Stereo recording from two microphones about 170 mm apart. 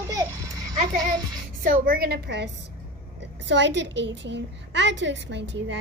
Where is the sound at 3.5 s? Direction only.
90° right.